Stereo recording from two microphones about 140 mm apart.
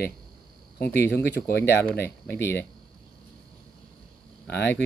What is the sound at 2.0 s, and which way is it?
Speech, 15° left (ahead or behind).